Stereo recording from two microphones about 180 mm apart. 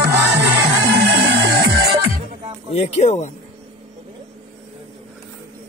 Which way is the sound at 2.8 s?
40° left (ahead or behind).